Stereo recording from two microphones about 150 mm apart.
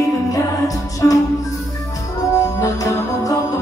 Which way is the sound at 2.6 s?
20° left (ahead or behind).